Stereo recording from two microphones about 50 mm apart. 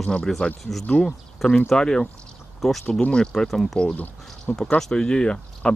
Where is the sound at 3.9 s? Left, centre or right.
Left.